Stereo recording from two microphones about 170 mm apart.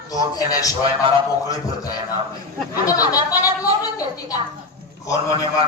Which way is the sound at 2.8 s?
20° left (ahead or behind).